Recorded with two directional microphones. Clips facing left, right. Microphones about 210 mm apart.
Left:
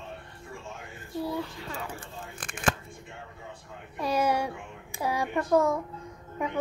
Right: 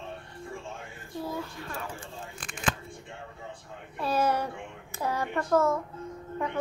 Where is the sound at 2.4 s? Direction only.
55° left (ahead or behind).